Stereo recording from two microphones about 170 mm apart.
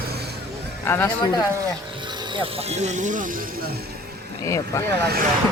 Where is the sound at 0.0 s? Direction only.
70° right (ahead or behind).